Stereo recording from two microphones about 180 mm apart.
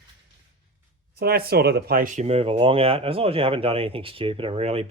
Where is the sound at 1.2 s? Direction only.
60° right (ahead or behind).